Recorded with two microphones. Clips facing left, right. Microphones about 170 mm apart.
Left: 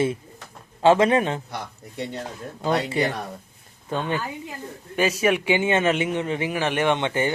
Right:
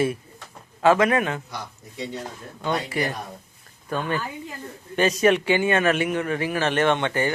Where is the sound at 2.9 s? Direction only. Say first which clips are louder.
Left 3 dB; 25° left (ahead or behind).